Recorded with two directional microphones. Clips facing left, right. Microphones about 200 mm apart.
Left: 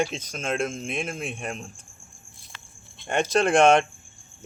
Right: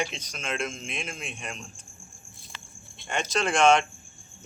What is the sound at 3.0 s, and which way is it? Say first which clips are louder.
Speech: left 6 dB; 55° left (ahead or behind).